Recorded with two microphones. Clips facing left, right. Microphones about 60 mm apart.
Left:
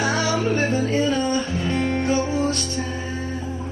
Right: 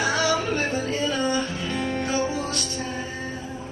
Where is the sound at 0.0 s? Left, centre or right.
Left.